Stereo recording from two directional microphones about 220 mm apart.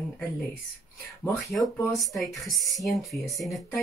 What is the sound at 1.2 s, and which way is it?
Speech, 5° left (ahead or behind).